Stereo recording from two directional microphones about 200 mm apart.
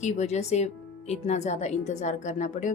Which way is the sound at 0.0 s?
35° left (ahead or behind).